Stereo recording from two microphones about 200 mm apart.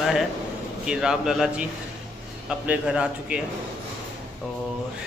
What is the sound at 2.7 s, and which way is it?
Speech, 5° right (ahead or behind).